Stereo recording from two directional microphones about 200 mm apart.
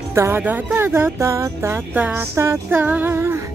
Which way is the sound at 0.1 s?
10° right (ahead or behind).